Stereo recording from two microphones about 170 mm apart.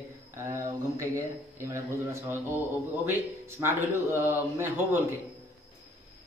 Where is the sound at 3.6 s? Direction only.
15° right (ahead or behind).